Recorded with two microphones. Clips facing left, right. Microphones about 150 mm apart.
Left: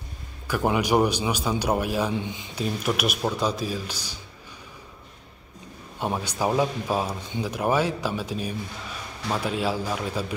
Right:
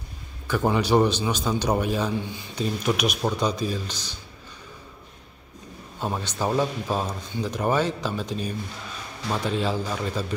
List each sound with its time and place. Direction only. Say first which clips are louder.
0.5 s a man's voice: right 1 dB; 10° left (ahead or behind)
2.2 s a man's voice: left 1 dB; 20° left (ahead or behind)
2.5 s a man's voice: right 2 dB; 5° left (ahead or behind)
5.9 s a man's voice: left 1 dB; 10° left (ahead or behind)